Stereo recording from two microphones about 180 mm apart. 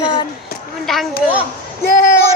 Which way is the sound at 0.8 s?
Centre (ahead or behind).